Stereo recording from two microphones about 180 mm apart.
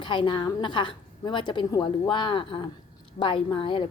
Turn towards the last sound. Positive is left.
turn(degrees=30)  # may be behind; listen again after turning